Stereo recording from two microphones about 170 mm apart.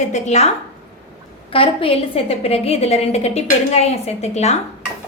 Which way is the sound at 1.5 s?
30° left (ahead or behind).